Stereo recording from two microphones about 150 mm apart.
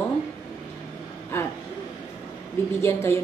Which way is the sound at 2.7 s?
15° left (ahead or behind).